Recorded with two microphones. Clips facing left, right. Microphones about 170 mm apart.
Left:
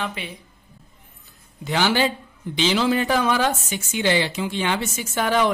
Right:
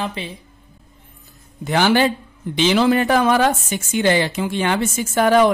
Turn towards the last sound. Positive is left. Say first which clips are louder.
# right 6 dB
turn(degrees=-50)  # may be behind; listen again after turning